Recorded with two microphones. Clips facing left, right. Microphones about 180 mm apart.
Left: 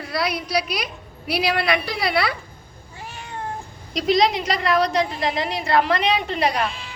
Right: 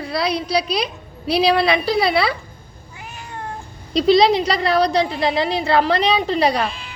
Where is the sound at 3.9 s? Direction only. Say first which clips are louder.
Right 5 dB; 30° right (ahead or behind).